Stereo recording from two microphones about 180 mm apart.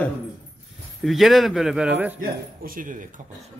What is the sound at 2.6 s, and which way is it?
Speech, 50° right (ahead or behind).